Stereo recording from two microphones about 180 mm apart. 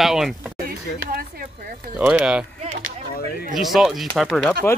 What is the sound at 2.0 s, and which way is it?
Speech, 5° right (ahead or behind).